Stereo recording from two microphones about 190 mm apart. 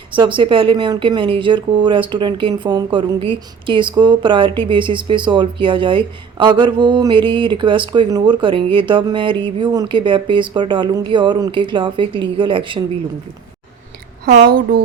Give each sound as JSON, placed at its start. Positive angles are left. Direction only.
{"t": 0.1, "sound": "speech", "side_deg": -25}
{"t": 14.3, "sound": "speech", "side_deg": -50}